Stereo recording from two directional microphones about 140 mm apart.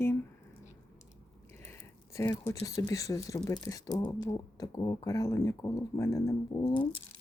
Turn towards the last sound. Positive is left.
turn(degrees=40)  # may be behind; listen again after turning